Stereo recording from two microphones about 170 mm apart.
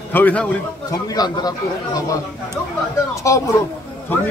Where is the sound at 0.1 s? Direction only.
10° left (ahead or behind).